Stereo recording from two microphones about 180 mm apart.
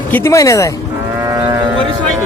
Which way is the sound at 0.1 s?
15° left (ahead or behind).